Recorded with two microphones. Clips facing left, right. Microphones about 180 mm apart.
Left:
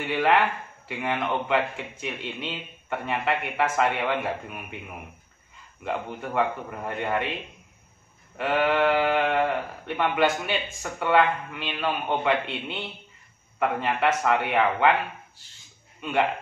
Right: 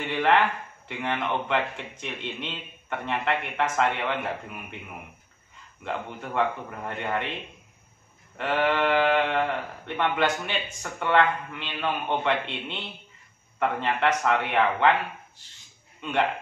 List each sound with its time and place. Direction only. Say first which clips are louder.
0.0 s a man's voice: even; 5° left (ahead or behind)
5.9 s a man's voice: left 2 dB; 5° left (ahead or behind)
8.4 s a man's voice: left 2 dB; 5° left (ahead or behind)